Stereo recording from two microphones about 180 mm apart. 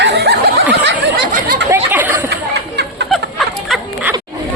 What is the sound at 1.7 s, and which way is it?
Chatter, 10° right (ahead or behind).